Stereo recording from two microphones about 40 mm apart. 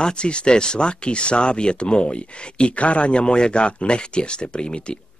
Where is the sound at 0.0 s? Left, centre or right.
Left.